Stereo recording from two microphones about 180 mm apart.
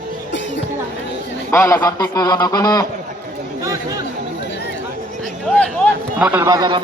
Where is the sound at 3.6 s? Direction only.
20° right (ahead or behind).